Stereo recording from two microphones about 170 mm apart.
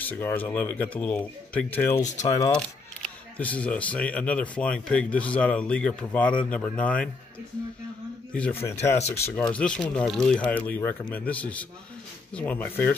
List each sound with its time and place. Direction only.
0.1 s speech: 10° left (ahead or behind)
2.2 s speech: 25° left (ahead or behind)
3.0 s speech: 10° left (ahead or behind)
8.3 s speech: 10° left (ahead or behind)